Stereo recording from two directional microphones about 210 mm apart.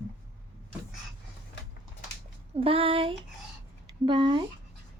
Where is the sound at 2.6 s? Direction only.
25° right (ahead or behind).